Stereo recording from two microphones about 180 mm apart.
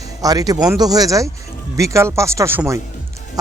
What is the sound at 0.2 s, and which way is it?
A man's voice, 20° right (ahead or behind).